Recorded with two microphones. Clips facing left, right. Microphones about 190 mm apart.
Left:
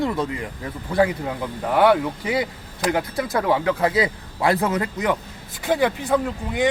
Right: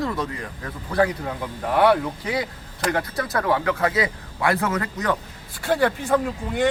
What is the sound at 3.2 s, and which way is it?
A man's voice, 20° left (ahead or behind).